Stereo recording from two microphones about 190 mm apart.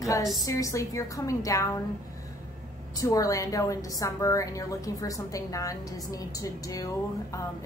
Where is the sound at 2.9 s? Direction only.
20° left (ahead or behind).